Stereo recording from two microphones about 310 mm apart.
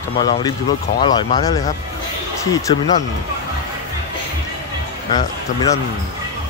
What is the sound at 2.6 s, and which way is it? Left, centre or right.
Speech, centre.